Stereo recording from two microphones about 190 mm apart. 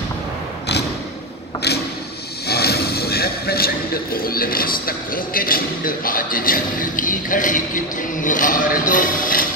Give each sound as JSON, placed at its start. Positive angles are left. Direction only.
{"t": 2.4, "sound": "speech", "side_deg": 55}